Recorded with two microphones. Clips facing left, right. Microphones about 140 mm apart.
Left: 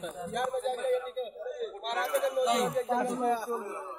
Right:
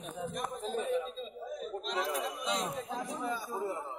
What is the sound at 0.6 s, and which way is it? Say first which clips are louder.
A man's voice: left 4 dB; 65° left (ahead or behind).